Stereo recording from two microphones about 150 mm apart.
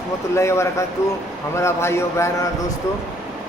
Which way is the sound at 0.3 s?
20° left (ahead or behind).